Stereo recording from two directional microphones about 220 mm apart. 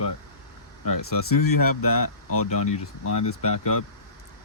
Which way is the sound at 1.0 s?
80° left.